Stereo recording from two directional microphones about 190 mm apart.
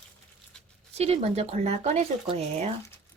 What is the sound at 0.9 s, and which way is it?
Speech, 35° right (ahead or behind).